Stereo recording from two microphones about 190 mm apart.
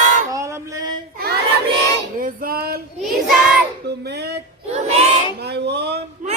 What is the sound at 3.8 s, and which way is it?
Child singing, 60° right (ahead or behind).